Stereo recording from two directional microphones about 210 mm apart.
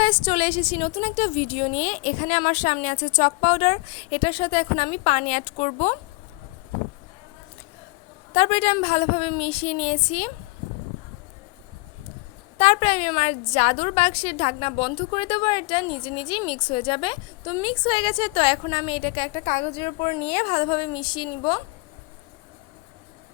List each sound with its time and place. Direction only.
0.0 s a woman's voice: 25° left (ahead or behind)
8.3 s a woman's voice: 30° left (ahead or behind)
12.5 s a woman's voice: 30° left (ahead or behind)